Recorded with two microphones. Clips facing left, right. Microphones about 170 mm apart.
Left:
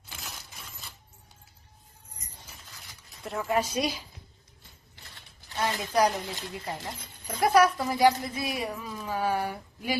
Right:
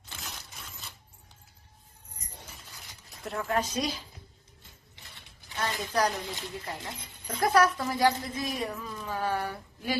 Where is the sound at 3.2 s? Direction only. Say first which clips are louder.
Left 2 dB; centre (ahead or behind).